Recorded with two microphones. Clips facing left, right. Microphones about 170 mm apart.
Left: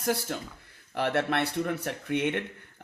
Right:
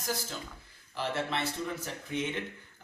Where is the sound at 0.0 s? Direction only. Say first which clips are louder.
Left 7 dB; 65° left (ahead or behind).